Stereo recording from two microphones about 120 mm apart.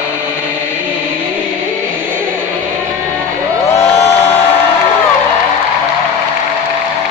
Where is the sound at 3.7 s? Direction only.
20° left (ahead or behind).